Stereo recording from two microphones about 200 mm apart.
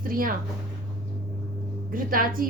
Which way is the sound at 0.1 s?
45° right (ahead or behind).